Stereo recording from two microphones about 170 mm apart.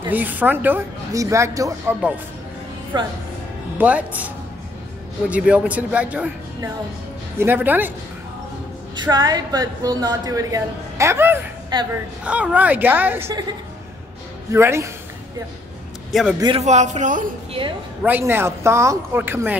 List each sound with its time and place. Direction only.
0.0 s a woman's voice: 10° right (ahead or behind)
3.7 s speech: 10° right (ahead or behind)
5.3 s speech: 10° right (ahead or behind)
7.3 s speech: 10° right (ahead or behind)
8.9 s a woman's voice: 25° right (ahead or behind)
11.7 s a woman's voice: 25° right (ahead or behind)
12.3 s speech: 10° right (ahead or behind)
14.5 s speech: 15° right (ahead or behind)
16.1 s a man's voice: centre (ahead or behind)
16.3 s a woman's voice: 25° right (ahead or behind)
16.6 s a man's voice: 40° right (ahead or behind)
17.5 s a woman's voice: 30° right (ahead or behind)
18.0 s speech: 10° right (ahead or behind)